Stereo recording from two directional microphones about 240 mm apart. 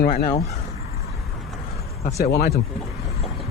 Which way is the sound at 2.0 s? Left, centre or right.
Left.